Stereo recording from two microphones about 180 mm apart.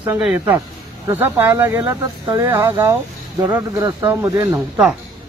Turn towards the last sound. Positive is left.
turn(degrees=-20)  # may be behind; listen again after turning